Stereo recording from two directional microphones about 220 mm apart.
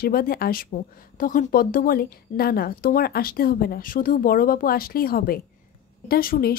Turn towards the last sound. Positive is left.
turn(degrees=40)  # may be behind; listen again after turning